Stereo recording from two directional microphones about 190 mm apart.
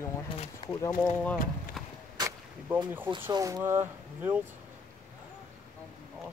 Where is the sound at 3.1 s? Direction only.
25° right (ahead or behind).